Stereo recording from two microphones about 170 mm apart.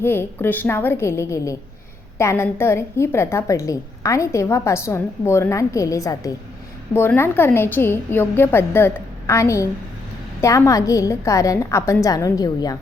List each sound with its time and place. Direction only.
0.0 s a woman's voice: 15° left (ahead or behind)